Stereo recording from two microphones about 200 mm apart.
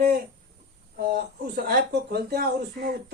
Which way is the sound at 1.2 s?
50° right (ahead or behind).